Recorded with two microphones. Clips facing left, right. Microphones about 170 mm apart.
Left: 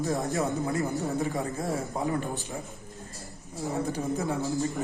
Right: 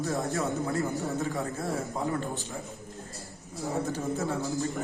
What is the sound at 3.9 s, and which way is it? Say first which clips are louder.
Speech: left 1 dB; 15° left (ahead or behind).